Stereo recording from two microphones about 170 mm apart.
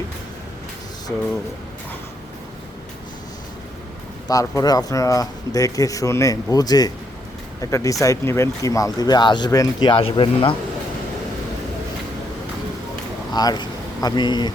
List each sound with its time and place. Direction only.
4.3 s speech: 20° left (ahead or behind)
13.3 s speech: 25° left (ahead or behind)